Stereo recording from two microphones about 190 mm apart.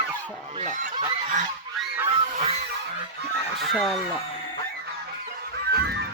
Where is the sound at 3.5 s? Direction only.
Centre (ahead or behind).